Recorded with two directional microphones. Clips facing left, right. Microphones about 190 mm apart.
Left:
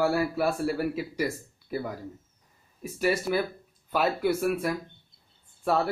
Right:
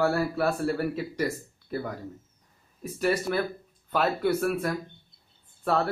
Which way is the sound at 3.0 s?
5° left (ahead or behind).